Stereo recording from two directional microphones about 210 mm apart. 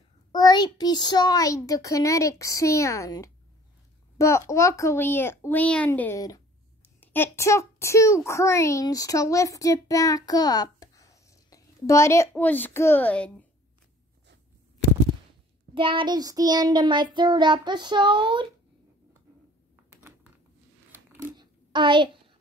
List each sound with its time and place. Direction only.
0.3 s a child's voice: 20° left (ahead or behind)
15.7 s child singing: 25° right (ahead or behind)
21.2 s a sound: 20° right (ahead or behind)